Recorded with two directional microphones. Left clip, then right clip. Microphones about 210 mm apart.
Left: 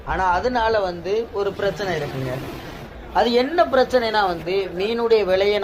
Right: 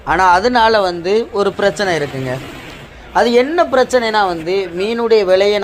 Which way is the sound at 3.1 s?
35° right (ahead or behind).